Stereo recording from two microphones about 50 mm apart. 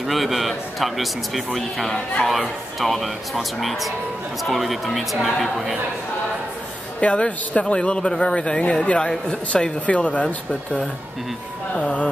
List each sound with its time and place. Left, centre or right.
0.0 s a man's voice: centre
7.0 s speech: left
11.7 s speech: left